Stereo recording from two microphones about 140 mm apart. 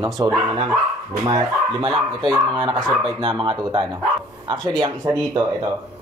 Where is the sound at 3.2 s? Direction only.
35° right (ahead or behind).